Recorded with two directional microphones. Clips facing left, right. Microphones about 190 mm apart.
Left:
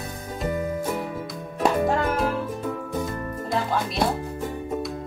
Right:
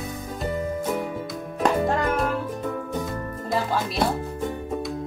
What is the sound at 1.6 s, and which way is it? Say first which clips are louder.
Music: even; 5° left (ahead or behind).